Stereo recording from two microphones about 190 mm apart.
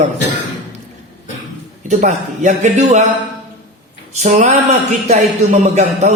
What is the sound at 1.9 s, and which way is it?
Speech, 40° right (ahead or behind).